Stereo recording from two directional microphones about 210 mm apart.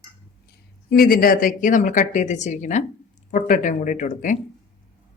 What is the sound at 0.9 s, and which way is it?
A woman's voice, 45° left (ahead or behind).